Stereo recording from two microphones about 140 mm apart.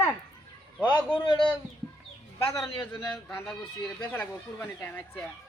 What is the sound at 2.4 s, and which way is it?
Speech, 20° left (ahead or behind).